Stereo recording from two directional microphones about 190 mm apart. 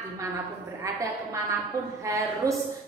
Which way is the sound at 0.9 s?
15° right (ahead or behind).